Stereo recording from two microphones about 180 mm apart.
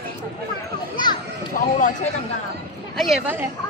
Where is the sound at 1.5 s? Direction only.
45° left (ahead or behind).